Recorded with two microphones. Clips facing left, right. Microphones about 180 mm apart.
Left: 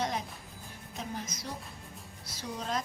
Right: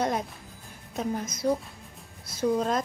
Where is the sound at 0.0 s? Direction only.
55° right (ahead or behind).